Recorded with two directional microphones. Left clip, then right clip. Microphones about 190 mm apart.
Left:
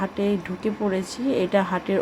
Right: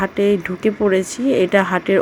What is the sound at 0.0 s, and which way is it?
Speech, 25° right (ahead or behind).